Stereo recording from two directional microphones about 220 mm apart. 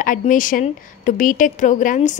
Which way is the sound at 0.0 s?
35° left (ahead or behind).